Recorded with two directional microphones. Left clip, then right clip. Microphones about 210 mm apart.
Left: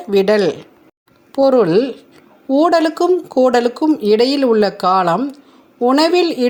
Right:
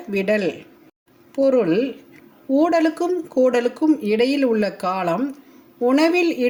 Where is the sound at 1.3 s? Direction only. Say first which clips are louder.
Left 6 dB; 25° left (ahead or behind).